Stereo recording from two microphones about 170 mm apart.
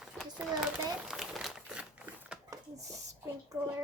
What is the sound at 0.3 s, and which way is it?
Crumpling, 5° right (ahead or behind).